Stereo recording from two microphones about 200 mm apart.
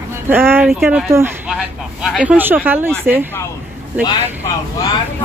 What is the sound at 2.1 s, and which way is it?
Speech, 10° right (ahead or behind).